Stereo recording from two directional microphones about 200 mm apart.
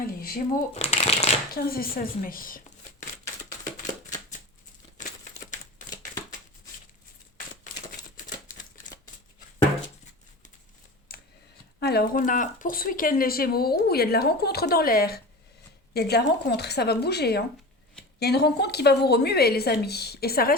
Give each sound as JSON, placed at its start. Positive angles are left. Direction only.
{"t": 0.0, "sound": "speech", "side_deg": 45}
{"t": 0.7, "sound": "speech", "side_deg": 30}
{"t": 1.5, "sound": "speech", "side_deg": 50}
{"t": 4.9, "sound": "crumpling", "side_deg": 40}
{"t": 11.1, "sound": "a sound", "side_deg": 50}
{"t": 11.8, "sound": "speech", "side_deg": 55}